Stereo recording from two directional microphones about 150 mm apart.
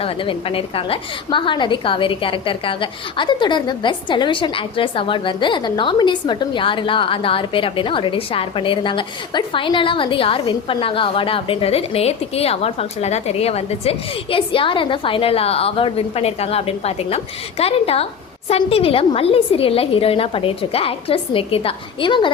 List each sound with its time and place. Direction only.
0.0 s a woman's voice: 35° left (ahead or behind)